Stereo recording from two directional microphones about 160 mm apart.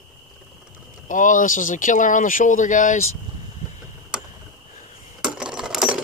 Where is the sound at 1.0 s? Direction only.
55° left (ahead or behind).